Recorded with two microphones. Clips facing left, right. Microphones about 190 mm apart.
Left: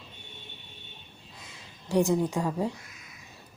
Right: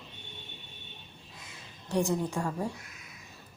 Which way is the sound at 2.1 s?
15° left (ahead or behind).